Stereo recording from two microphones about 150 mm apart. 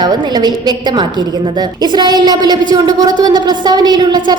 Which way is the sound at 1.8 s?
30° right (ahead or behind).